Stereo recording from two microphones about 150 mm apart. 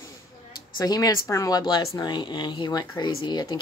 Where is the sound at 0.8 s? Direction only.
25° left (ahead or behind).